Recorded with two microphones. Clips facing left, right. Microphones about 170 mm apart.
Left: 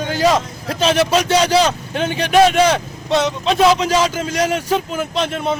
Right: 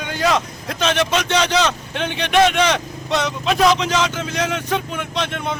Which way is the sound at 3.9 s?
10° left (ahead or behind).